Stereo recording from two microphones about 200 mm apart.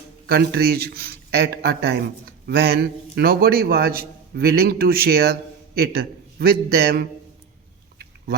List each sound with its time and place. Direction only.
0.3 s a man's voice: 50° right (ahead or behind)